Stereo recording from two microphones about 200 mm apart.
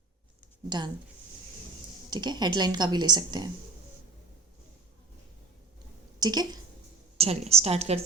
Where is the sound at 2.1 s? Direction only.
20° right (ahead or behind).